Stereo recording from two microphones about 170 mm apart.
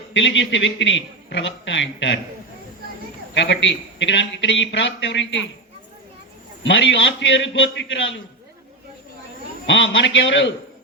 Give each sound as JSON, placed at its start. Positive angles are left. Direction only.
{"t": 0.1, "sound": "a man's voice", "side_deg": 90}
{"t": 3.3, "sound": "a man's voice", "side_deg": 90}
{"t": 6.7, "sound": "a man's voice", "side_deg": 90}
{"t": 9.6, "sound": "a man's voice", "side_deg": 90}